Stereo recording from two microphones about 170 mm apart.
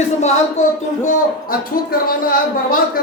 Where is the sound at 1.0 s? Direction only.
55° left (ahead or behind).